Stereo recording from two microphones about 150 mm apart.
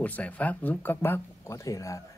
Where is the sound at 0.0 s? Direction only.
10° left (ahead or behind).